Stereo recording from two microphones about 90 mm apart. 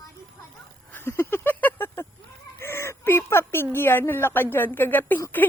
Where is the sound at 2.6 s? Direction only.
30° left (ahead or behind).